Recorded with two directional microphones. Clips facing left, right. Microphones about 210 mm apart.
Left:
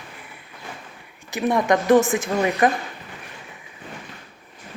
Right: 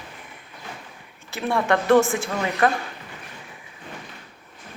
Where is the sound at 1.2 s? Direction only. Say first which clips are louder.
Left 3 dB; 15° left (ahead or behind).